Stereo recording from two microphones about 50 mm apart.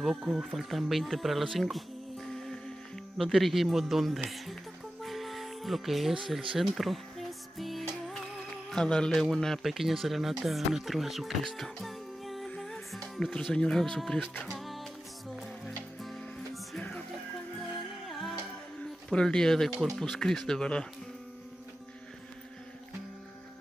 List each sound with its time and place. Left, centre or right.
0.2 s speech: centre
0.5 s a man's voice: centre
5.0 s music: centre
6.3 s speech: centre
6.8 s music: centre
8.6 s a man's voice: centre
9.6 s a man's voice: centre
11.4 s music: centre
12.4 s music: centre
13.1 s a man's voice: centre
14.5 s music: centre
18.0 s music: centre
19.0 s speech: centre